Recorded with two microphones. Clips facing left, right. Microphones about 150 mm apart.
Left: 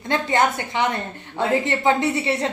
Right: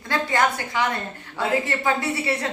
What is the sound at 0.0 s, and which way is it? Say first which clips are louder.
A woman's voice: left 2 dB; 20° left (ahead or behind).